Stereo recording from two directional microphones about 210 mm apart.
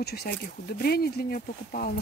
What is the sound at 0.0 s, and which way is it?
Speech, 50° left (ahead or behind).